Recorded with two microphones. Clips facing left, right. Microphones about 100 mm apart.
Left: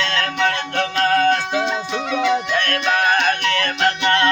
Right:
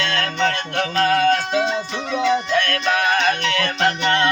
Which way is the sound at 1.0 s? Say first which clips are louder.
Left 1 dB; 35° left (ahead or behind).